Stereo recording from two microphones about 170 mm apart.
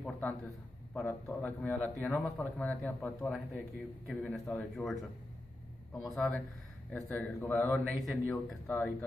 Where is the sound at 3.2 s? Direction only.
5° right (ahead or behind).